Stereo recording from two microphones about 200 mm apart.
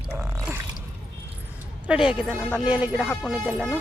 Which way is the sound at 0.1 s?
15° right (ahead or behind).